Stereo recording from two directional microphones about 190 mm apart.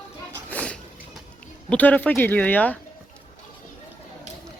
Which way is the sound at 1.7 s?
10° left (ahead or behind).